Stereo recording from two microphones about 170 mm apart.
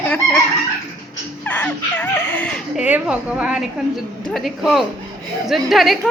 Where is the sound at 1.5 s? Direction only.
10° left (ahead or behind).